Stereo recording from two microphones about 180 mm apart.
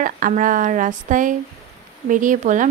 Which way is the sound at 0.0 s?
50° right (ahead or behind).